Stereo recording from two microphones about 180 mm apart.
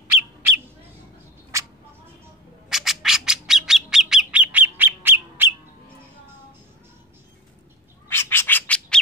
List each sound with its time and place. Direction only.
1.5 s a sound: 15° right (ahead or behind)
2.7 s bird: centre (ahead or behind)
8.1 s bird: 15° left (ahead or behind)